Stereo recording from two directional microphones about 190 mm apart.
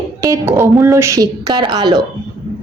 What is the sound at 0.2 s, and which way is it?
A woman's voice, 15° right (ahead or behind).